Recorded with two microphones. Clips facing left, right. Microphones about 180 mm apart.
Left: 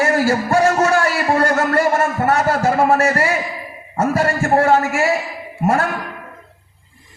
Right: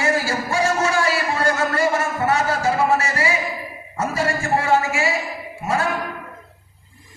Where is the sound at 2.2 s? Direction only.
55° left (ahead or behind).